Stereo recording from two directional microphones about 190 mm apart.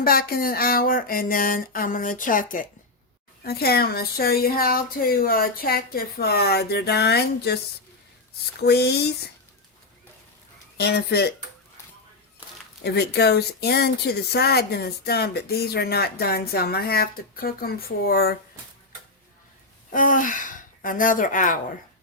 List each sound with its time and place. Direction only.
0.0 s a sound: 50° left (ahead or behind)
3.4 s speech: 55° left (ahead or behind)
8.6 s speech: 60° left (ahead or behind)
10.8 s speech: 60° left (ahead or behind)
12.8 s speech: 60° left (ahead or behind)
19.9 s a sound: 45° left (ahead or behind)